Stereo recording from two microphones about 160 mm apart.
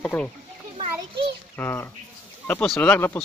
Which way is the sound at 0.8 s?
35° right (ahead or behind).